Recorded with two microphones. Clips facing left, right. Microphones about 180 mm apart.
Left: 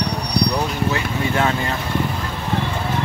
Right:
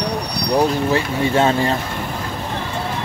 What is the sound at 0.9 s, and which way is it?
Speech, 30° right (ahead or behind).